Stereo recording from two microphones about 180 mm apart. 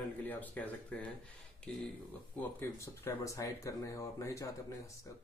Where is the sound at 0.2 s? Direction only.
10° left (ahead or behind).